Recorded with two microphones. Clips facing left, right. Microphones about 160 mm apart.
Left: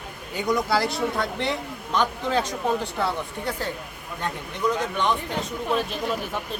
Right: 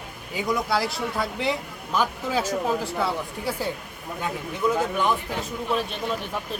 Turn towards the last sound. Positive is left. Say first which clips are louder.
# left 1 dB
turn(degrees=0)  # may be behind; listen again after turning